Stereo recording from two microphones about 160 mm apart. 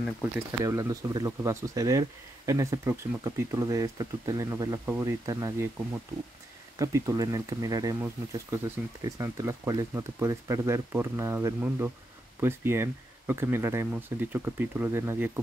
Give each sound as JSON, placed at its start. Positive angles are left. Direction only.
{"t": 0.0, "sound": "speech", "side_deg": -5}
{"t": 0.5, "sound": "speech", "side_deg": -20}
{"t": 6.8, "sound": "speech", "side_deg": -20}